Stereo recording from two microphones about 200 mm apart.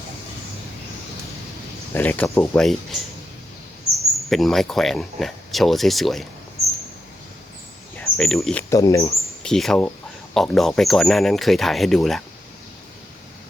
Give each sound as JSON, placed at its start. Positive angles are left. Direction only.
{"t": 1.9, "sound": "speech", "side_deg": 10}
{"t": 3.9, "sound": "speech", "side_deg": 0}
{"t": 7.9, "sound": "speech", "side_deg": 5}
{"t": 8.7, "sound": "speech", "side_deg": 15}
{"t": 9.4, "sound": "speech", "side_deg": 0}